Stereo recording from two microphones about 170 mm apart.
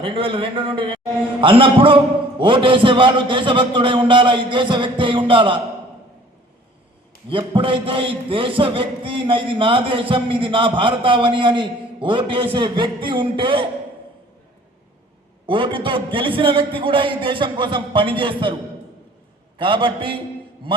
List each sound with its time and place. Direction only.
0.0 s a man's voice: 30° right (ahead or behind)
1.4 s a sound: 30° right (ahead or behind)
2.4 s a man's voice: 30° right (ahead or behind)
7.3 s a sound: 30° right (ahead or behind)
12.0 s a man's voice: 30° right (ahead or behind)
15.4 s a man's voice: 30° right (ahead or behind)
19.5 s a man's voice: 30° right (ahead or behind)